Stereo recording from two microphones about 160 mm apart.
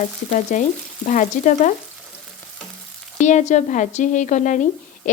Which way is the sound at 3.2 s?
50° left (ahead or behind).